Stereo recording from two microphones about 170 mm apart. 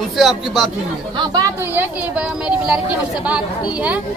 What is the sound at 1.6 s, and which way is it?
A woman's voice, 10° right (ahead or behind).